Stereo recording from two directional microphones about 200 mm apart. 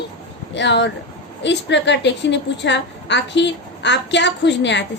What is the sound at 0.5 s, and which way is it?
A woman's voice, 60° left (ahead or behind).